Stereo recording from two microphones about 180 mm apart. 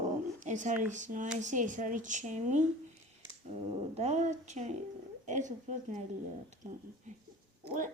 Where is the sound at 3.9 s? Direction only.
35° right (ahead or behind).